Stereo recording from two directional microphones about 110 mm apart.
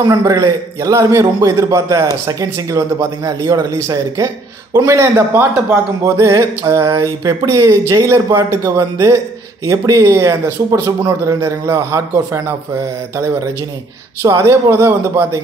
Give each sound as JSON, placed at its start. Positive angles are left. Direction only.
{"t": 0.0, "sound": "a man's voice", "side_deg": -30}
{"t": 14.2, "sound": "a man's voice", "side_deg": -25}